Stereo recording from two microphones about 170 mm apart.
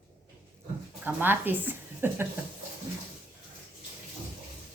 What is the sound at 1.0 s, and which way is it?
Speech, 10° right (ahead or behind).